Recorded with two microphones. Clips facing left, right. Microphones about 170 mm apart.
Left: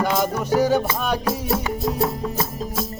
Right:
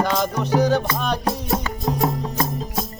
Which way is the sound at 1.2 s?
35° right (ahead or behind).